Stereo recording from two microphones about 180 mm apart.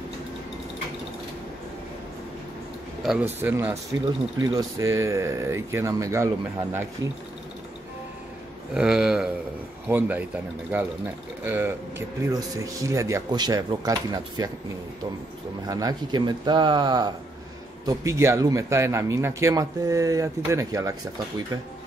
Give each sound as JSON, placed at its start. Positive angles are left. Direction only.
{"t": 3.0, "sound": "a man's voice", "side_deg": -5}
{"t": 8.7, "sound": "a man's voice", "side_deg": -5}
{"t": 15.6, "sound": "a man's voice", "side_deg": -20}